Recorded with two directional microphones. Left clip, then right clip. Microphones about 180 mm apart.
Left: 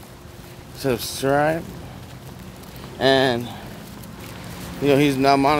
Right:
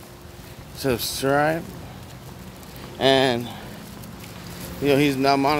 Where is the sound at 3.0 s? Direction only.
10° right (ahead or behind).